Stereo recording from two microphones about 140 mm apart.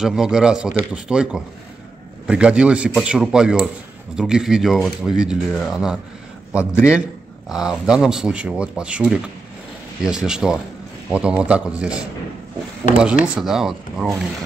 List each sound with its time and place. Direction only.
0.0 s a man's voice: 5° right (ahead or behind)
6.6 s a man's voice: 20° left (ahead or behind)
6.9 s a man's voice: 5° right (ahead or behind)
13.2 s a man's voice: 5° right (ahead or behind)